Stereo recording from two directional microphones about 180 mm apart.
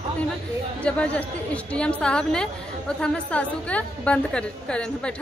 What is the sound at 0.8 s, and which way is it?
A woman's voice, 5° left (ahead or behind).